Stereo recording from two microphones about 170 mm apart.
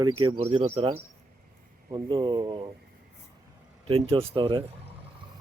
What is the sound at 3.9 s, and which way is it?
Speech, 35° right (ahead or behind).